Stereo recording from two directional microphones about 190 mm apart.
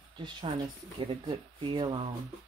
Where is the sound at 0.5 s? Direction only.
25° right (ahead or behind).